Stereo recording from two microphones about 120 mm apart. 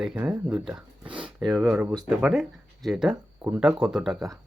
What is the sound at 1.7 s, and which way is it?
Speech, 10° right (ahead or behind).